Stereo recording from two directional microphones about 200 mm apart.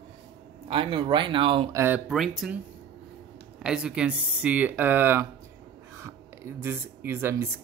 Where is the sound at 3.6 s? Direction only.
5° right (ahead or behind).